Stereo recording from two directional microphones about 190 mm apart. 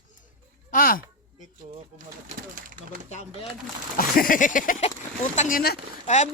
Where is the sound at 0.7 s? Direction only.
50° left (ahead or behind).